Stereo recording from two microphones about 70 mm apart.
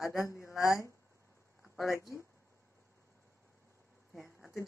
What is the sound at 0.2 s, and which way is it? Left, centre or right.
Speech, left.